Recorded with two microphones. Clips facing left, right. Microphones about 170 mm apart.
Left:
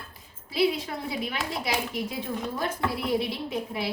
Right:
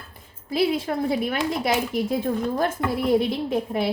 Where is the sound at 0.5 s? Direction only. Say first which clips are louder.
Right 3 dB; 50° right (ahead or behind).